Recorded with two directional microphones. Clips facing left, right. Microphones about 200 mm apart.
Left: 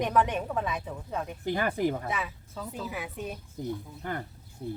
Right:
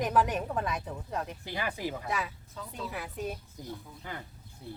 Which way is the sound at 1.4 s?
50° left (ahead or behind).